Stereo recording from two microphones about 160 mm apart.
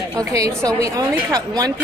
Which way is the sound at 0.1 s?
20° right (ahead or behind).